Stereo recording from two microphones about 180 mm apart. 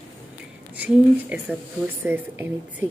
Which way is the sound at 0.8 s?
10° right (ahead or behind).